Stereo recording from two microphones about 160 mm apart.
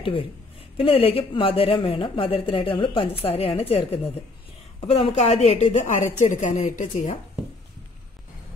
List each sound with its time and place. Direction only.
0.7 s a woman's voice: 35° left (ahead or behind); by 7.2 s 50° left (ahead or behind)